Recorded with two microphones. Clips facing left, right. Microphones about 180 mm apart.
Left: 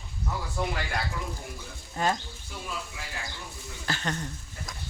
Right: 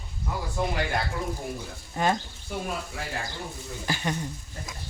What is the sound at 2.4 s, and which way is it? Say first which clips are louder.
Speech: right 6 dB; 50° right (ahead or behind).